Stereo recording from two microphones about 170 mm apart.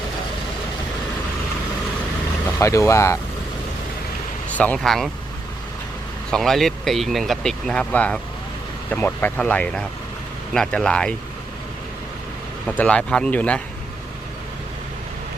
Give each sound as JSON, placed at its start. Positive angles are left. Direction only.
{"t": 2.6, "sound": "speech", "side_deg": 20}
{"t": 4.5, "sound": "speech", "side_deg": 10}
{"t": 6.3, "sound": "speech", "side_deg": 0}
{"t": 12.6, "sound": "speech", "side_deg": 10}